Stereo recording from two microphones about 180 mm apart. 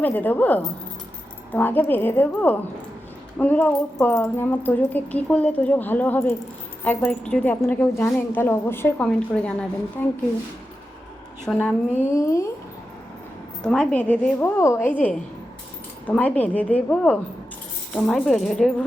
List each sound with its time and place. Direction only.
0.0 s a woman's voice: 10° left (ahead or behind)
11.4 s speech: 5° left (ahead or behind)
12.1 s a woman's voice: 15° left (ahead or behind)
13.6 s a woman's voice: 5° left (ahead or behind)